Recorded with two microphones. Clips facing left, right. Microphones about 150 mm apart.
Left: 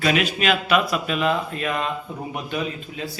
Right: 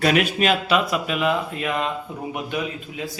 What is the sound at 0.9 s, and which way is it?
A man's voice, 15° right (ahead or behind).